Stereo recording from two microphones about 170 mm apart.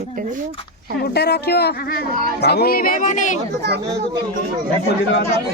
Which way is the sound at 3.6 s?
75° right (ahead or behind).